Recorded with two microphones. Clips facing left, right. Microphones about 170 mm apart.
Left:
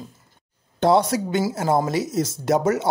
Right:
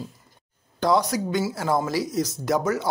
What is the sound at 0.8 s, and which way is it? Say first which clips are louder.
Speech: left 4 dB; 25° left (ahead or behind).